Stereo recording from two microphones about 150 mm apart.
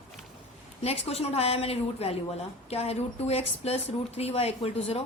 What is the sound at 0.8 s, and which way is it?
A woman's voice, 45° left (ahead or behind).